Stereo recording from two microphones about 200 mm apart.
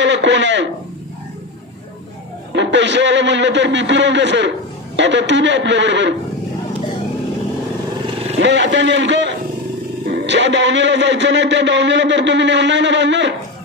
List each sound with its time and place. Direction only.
0.0 s a sound: 65° right (ahead or behind)
2.5 s a man's voice: 60° right (ahead or behind)
8.4 s a man's voice: 65° right (ahead or behind)